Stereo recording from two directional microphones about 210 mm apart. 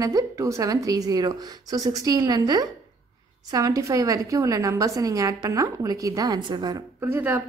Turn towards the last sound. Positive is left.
turn(degrees=-10)  # may be behind; listen again after turning